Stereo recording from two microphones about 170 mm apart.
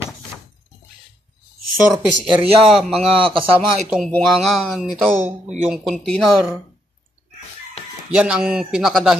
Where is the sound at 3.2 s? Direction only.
30° right (ahead or behind).